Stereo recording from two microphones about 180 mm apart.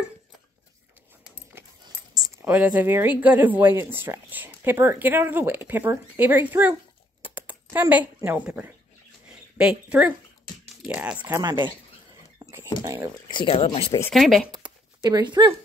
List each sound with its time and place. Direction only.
2.3 s speech: 10° right (ahead or behind)
11.3 s speech: 25° right (ahead or behind)
12.8 s speech: 15° right (ahead or behind)
13.3 s speech: 30° left (ahead or behind)
14.1 s speech: centre (ahead or behind)
15.0 s speech: 20° right (ahead or behind)